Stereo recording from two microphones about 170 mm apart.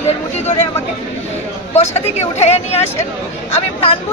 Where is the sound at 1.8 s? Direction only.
40° left (ahead or behind).